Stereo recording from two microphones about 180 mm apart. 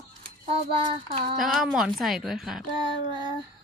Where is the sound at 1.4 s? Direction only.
Centre (ahead or behind).